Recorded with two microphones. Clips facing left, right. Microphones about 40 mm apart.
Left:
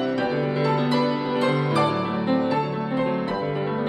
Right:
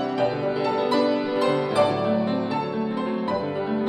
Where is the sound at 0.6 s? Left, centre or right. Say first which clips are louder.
Right 2 dB; centre.